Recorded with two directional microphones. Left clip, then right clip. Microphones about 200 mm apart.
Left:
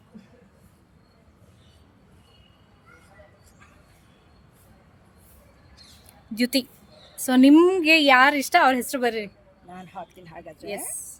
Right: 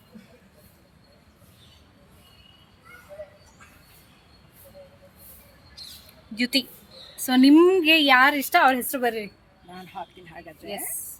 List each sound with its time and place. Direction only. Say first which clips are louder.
6.3 s speech: even; 60° left (ahead or behind)
7.3 s a woman's voice: even; 40° left (ahead or behind)
9.7 s a sound: right 1 dB; 55° left (ahead or behind)